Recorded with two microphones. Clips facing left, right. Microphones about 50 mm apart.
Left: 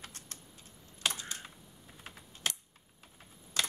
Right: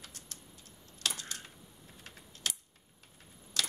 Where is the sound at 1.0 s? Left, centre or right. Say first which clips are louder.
Left 2 dB; centre.